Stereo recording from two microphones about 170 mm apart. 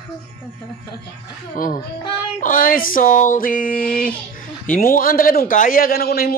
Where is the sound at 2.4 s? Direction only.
55° left (ahead or behind).